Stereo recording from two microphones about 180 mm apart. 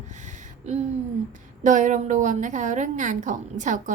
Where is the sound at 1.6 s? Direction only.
45° right (ahead or behind).